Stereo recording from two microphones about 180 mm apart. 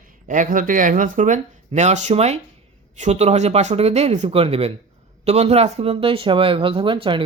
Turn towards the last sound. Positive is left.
turn(degrees=-30)  # may be behind; listen again after turning